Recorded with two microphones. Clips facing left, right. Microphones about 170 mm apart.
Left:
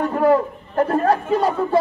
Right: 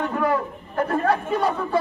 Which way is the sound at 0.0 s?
35° left (ahead or behind).